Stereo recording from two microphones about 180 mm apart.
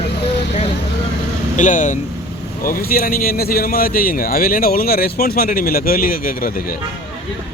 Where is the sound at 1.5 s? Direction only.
45° left (ahead or behind).